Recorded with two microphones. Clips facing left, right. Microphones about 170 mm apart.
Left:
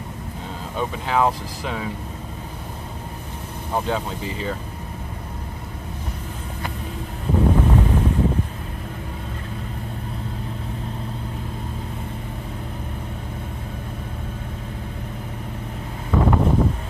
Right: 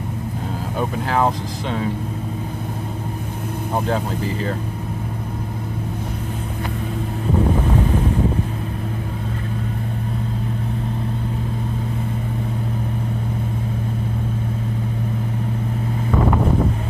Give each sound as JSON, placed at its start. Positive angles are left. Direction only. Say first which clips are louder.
{"t": 0.7, "sound": "speech", "louder": "right 1 dB", "side_deg": 0}